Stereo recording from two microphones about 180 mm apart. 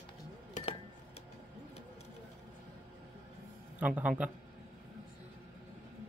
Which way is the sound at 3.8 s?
10° right (ahead or behind).